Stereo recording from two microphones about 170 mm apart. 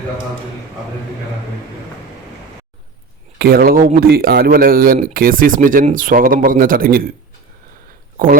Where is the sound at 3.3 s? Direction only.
60° right (ahead or behind).